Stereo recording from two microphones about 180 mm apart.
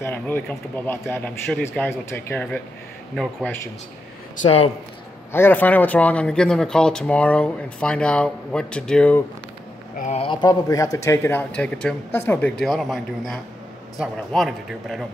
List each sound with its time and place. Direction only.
0.0 s speech: 10° left (ahead or behind)
4.4 s speech: 35° left (ahead or behind)
5.3 s speech: 10° left (ahead or behind)
9.9 s speech: 40° left (ahead or behind); by 15.0 s centre (ahead or behind)